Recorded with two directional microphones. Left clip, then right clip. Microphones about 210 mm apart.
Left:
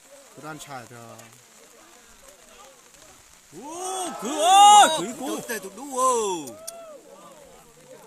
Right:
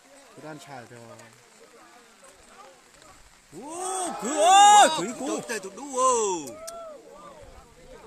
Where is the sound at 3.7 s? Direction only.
5° right (ahead or behind).